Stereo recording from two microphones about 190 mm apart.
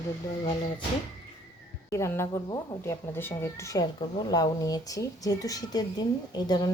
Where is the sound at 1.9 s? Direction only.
15° left (ahead or behind).